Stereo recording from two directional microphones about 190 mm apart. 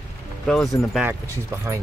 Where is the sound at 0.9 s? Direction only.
10° right (ahead or behind).